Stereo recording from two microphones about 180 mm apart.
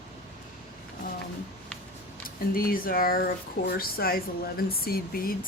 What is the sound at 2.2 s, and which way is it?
Speech, 55° left (ahead or behind).